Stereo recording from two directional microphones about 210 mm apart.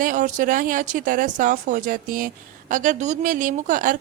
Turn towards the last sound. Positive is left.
turn(degrees=-40)  # may be behind; listen again after turning